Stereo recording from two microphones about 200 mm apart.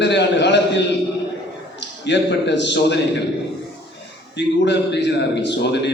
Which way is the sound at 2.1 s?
60° left (ahead or behind).